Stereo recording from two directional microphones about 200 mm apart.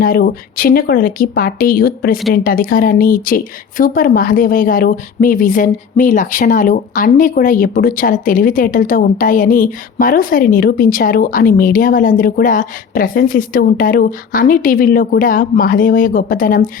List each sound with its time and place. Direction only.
0.0 s a woman's voice: 50° left (ahead or behind)